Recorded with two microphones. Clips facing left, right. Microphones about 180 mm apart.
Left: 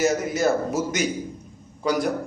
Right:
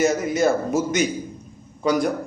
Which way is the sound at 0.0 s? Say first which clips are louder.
Right 2 dB; 5° left (ahead or behind).